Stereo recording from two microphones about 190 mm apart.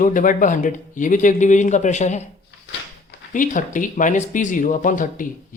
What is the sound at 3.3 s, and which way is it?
Speech, 40° left (ahead or behind).